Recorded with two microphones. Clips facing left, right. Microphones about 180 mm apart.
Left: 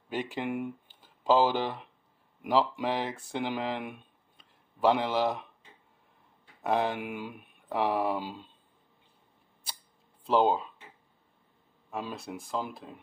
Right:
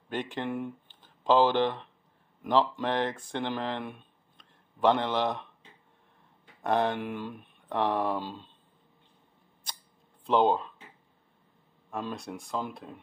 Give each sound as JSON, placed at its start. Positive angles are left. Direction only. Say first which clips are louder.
{"t": 0.1, "sound": "a man's voice", "louder": "even", "side_deg": 5}
{"t": 6.6, "sound": "speech", "louder": "right 1 dB", "side_deg": 5}
{"t": 10.2, "sound": "speech", "louder": "right 1 dB", "side_deg": 5}
{"t": 11.9, "sound": "speech", "louder": "right 1 dB", "side_deg": 5}